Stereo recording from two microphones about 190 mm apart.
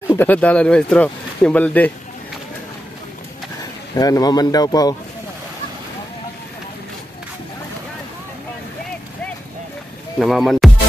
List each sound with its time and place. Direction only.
0.1 s speech: 10° left (ahead or behind)
3.9 s speech: 20° left (ahead or behind)
10.1 s speech: centre (ahead or behind)